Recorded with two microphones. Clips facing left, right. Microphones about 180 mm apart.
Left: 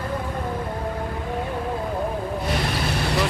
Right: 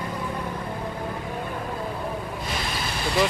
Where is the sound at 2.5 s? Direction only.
65° left (ahead or behind).